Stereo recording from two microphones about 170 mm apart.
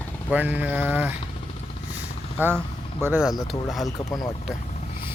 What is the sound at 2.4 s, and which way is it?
Speech, 10° right (ahead or behind).